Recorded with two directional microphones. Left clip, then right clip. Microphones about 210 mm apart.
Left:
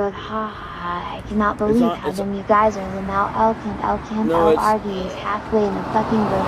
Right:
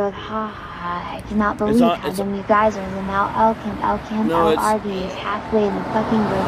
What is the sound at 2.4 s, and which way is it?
A woman's voice, centre (ahead or behind).